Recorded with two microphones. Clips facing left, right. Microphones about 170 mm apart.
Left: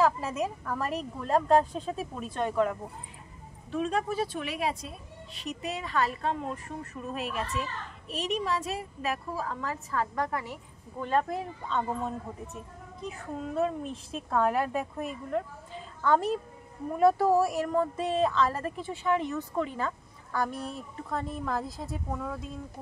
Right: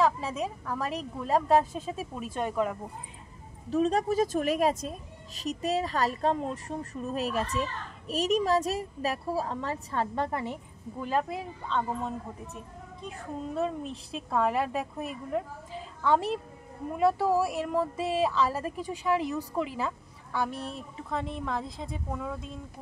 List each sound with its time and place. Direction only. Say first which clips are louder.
0.0 s a woman's voice: left 1 dB; 5° left (ahead or behind)
3.7 s a woman's voice: right 4 dB; 35° right (ahead or behind)
11.0 s a woman's voice: left 2 dB; 5° right (ahead or behind)
13.0 s a woman's voice: left 1 dB; centre (ahead or behind)
20.7 s a woman's voice: even; centre (ahead or behind)